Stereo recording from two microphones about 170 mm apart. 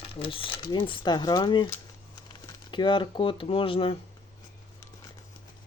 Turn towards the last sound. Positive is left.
turn(degrees=30)  # may be behind; listen again after turning